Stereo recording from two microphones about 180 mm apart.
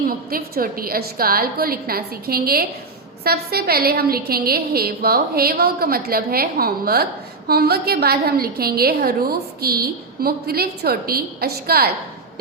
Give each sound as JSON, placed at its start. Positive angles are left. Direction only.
{"t": 0.0, "sound": "a woman's voice", "side_deg": -55}